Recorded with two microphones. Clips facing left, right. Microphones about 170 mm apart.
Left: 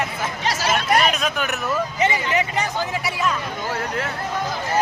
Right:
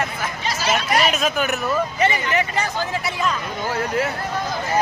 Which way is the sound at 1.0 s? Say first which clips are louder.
Right 2 dB; 5° right (ahead or behind).